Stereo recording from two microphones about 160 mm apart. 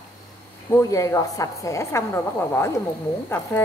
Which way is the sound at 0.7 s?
20° left (ahead or behind).